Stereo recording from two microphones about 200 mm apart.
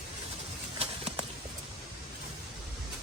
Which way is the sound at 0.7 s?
30° right (ahead or behind).